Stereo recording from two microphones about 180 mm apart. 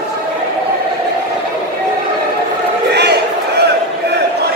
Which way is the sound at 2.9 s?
65° right (ahead or behind).